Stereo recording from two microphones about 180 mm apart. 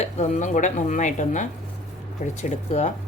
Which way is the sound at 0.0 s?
40° left (ahead or behind).